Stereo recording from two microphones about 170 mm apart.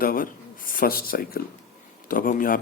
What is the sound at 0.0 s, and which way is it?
Speech, 55° left (ahead or behind).